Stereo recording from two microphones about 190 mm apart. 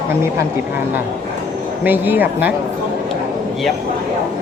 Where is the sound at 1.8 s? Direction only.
10° right (ahead or behind).